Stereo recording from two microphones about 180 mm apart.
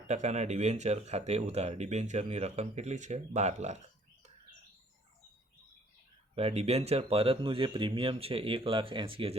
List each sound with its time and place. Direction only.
0.1 s speech: 40° right (ahead or behind)
6.3 s speech: 35° right (ahead or behind)